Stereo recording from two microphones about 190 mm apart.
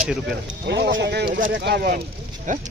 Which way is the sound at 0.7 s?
70° right (ahead or behind).